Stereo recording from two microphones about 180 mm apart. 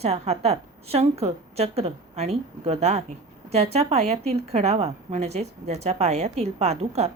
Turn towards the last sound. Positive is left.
turn(degrees=-35)  # may be behind; listen again after turning